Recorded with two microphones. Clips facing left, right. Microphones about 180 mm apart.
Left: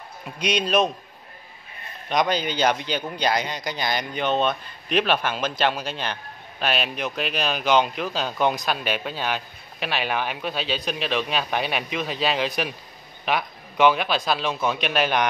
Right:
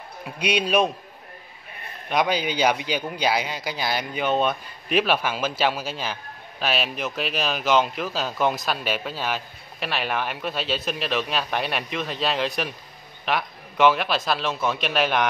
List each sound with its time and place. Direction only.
0.4 s a man's voice: 10° right (ahead or behind)
2.0 s a man's voice: 10° right (ahead or behind)